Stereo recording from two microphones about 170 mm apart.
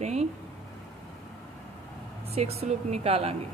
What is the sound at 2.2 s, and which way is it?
Speech, 35° right (ahead or behind).